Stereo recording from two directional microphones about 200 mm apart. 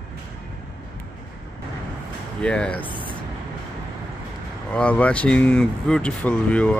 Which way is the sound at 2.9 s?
25° right (ahead or behind).